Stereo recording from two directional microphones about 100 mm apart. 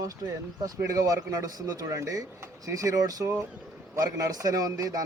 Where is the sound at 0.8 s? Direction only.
35° right (ahead or behind).